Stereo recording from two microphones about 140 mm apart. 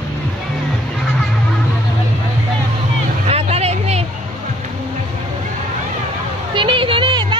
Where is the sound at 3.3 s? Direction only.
50° right (ahead or behind).